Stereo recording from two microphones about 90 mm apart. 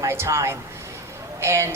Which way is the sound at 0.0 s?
30° right (ahead or behind).